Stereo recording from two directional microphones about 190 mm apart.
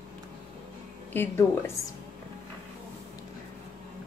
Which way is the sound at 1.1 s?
10° left (ahead or behind).